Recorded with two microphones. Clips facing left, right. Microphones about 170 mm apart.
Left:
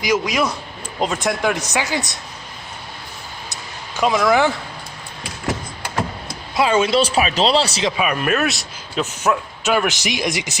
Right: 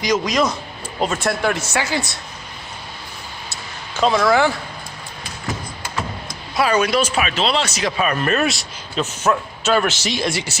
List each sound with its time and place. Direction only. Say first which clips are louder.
0.0 s speech: right 1 dB; 5° left (ahead or behind)
3.5 s a sound: right 1 dB; 15° left (ahead or behind)
6.0 s speech: left 3 dB; 25° left (ahead or behind)
7.9 s speech: right 2 dB; 10° left (ahead or behind)
9.0 s speech: even; 15° left (ahead or behind)